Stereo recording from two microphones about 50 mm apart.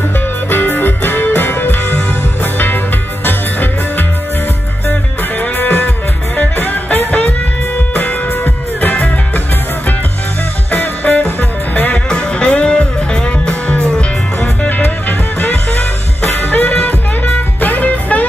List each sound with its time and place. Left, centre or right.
0.5 s music: left
3.3 s music: left
5.4 s music: left
10.7 s music: left
11.9 s music: left
15.7 s music: left